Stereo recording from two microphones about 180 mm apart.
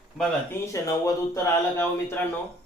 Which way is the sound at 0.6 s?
15° left (ahead or behind).